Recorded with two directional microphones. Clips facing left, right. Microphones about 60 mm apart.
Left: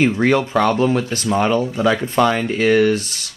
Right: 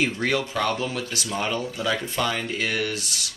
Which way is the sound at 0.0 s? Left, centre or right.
Left.